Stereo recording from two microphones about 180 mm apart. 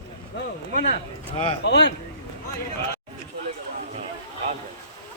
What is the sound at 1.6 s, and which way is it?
Speech, 75° left (ahead or behind).